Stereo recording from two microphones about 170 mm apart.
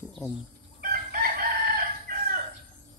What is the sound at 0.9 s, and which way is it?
Chicken, 65° right (ahead or behind).